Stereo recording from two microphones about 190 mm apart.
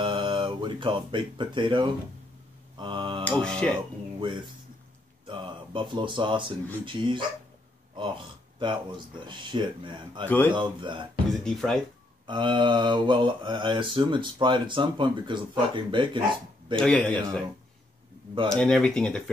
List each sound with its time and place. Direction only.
0.0 s speech: 25° right (ahead or behind)
2.8 s mantra: 25° right (ahead or behind)
3.3 s speech: 5° left (ahead or behind)
5.2 s speech: 25° right (ahead or behind)
8.5 s mantra: 25° right (ahead or behind)
10.2 s speech: 10° left (ahead or behind)
10.5 s mantra: 25° right (ahead or behind)
11.4 s speech: 5° left (ahead or behind)
12.3 s mantra: 25° right (ahead or behind)
16.7 s speech: 5° left (ahead or behind)
18.5 s speech: 5° left (ahead or behind)